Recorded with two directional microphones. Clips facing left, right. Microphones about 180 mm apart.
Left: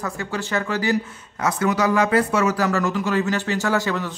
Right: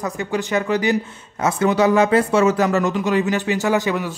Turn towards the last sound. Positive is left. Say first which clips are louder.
# right 3 dB
turn(degrees=-15)  # may be behind; listen again after turning